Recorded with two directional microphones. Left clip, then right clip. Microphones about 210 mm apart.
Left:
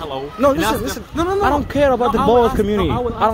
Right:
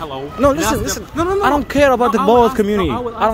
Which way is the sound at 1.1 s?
10° right (ahead or behind).